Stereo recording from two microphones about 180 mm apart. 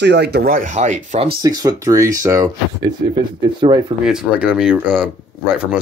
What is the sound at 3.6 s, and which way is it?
Speech, 25° right (ahead or behind).